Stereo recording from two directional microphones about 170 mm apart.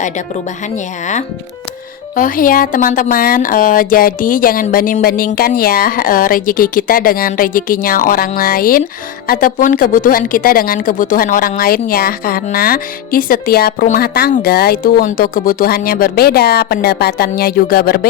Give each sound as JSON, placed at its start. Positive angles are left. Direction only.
{"t": 2.1, "sound": "a woman's voice", "side_deg": 55}